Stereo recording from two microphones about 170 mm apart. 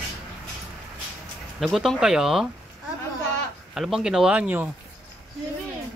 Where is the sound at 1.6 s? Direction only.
Centre (ahead or behind).